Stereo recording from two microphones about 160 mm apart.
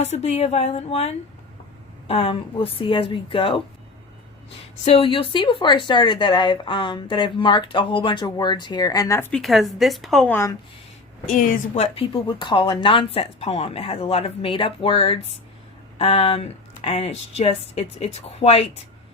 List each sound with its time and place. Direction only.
0.0 s speech: 40° left (ahead or behind)
4.9 s speech: 35° left (ahead or behind); by 9.4 s 15° left (ahead or behind)
9.4 s a woman's voice: centre (ahead or behind)
11.3 s a woman's voice: 55° left (ahead or behind)
11.7 s speech: 40° left (ahead or behind)